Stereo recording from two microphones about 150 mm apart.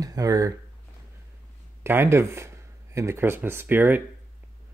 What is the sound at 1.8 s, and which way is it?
Speech, 15° right (ahead or behind).